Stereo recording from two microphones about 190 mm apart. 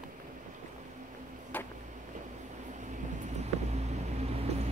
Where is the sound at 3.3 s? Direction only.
35° right (ahead or behind).